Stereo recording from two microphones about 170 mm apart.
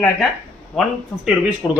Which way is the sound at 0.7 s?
5° left (ahead or behind).